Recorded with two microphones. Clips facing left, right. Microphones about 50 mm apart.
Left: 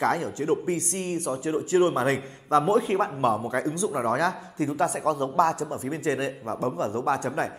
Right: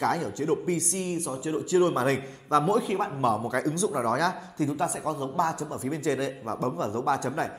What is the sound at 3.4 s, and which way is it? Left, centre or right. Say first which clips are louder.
Speech: even; left.